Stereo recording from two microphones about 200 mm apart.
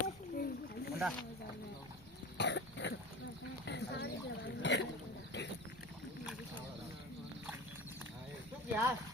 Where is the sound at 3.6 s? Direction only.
60° left (ahead or behind).